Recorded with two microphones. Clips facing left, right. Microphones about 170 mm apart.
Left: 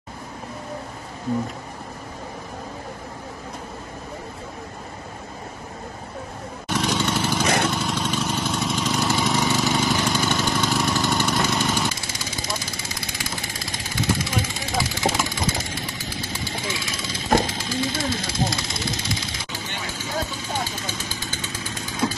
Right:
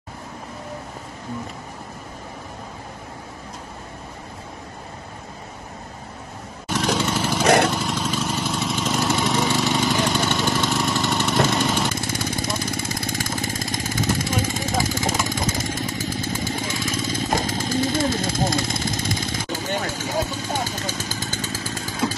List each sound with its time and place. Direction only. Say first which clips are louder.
6.7 s vehicle: right 1 dB; centre (ahead or behind)
7.4 s vehicle: right 8 dB; 65° right (ahead or behind)
7.7 s vehicle: even; centre (ahead or behind)
11.9 s vehicle: right 7 dB; 55° right (ahead or behind)